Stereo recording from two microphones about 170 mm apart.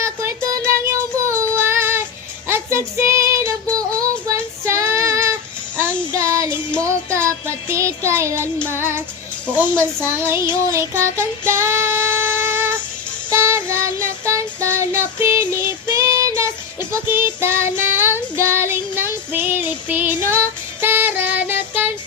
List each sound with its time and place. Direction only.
0.0 s music: 15° right (ahead or behind)
1.4 s child singing: 15° right (ahead or behind)
8.7 s music: 15° right (ahead or behind)
10.1 s music: 15° right (ahead or behind)
16.9 s child singing: 15° right (ahead or behind)
20.8 s music: 10° right (ahead or behind)